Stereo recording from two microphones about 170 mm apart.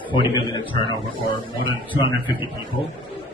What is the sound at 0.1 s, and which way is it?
Speech, 30° left (ahead or behind).